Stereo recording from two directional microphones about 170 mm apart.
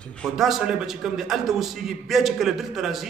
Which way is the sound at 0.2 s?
Centre (ahead or behind).